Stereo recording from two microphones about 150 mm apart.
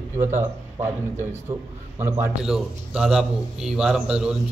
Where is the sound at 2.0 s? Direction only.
15° right (ahead or behind).